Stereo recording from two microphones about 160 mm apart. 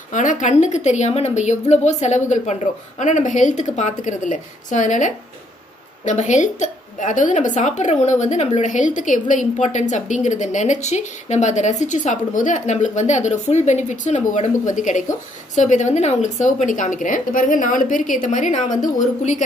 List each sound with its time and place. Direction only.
0.1 s a woman's voice: 50° left (ahead or behind)